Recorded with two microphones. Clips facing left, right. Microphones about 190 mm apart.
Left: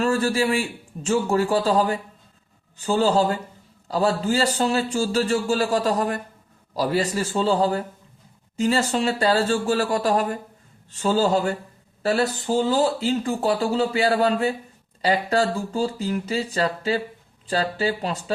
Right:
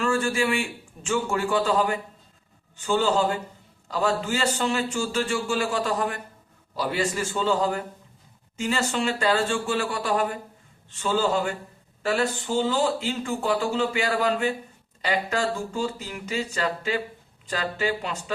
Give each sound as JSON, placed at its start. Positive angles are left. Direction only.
{"t": 0.0, "sound": "speech", "side_deg": 40}